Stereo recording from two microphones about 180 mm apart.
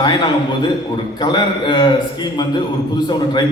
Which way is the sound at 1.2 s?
25° left (ahead or behind).